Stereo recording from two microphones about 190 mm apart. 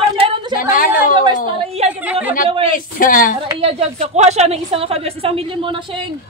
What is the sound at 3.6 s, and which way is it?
A woman's voice, 30° right (ahead or behind).